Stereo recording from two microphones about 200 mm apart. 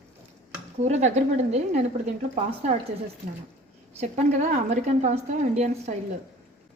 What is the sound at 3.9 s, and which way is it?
A woman's voice, 35° right (ahead or behind).